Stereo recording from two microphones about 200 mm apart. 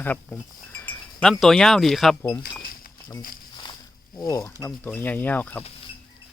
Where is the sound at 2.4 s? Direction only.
50° left (ahead or behind).